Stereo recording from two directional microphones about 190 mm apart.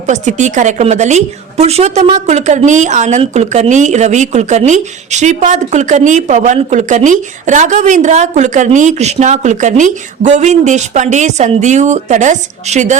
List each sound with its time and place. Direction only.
0.1 s a woman's voice: 40° right (ahead or behind)